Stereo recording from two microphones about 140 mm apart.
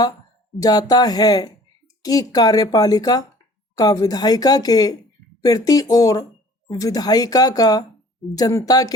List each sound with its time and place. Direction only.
0.6 s a woman's voice: 25° left (ahead or behind)